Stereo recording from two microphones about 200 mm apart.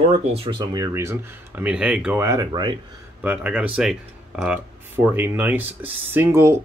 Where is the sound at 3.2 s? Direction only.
10° right (ahead or behind).